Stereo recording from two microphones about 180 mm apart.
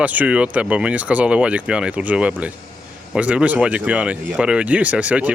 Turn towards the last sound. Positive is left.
turn(degrees=-5)  # may be behind; listen again after turning